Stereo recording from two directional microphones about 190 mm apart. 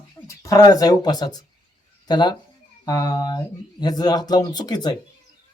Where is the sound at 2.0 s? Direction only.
20° left (ahead or behind).